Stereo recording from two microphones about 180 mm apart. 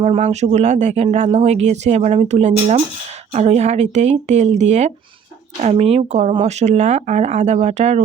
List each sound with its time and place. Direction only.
0.0 s speech: 35° right (ahead or behind)